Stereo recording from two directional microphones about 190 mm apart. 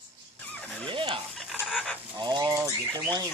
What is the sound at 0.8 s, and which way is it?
Fowl, 25° right (ahead or behind).